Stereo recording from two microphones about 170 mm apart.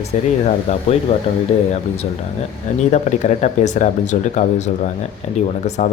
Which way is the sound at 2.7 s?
45° left (ahead or behind).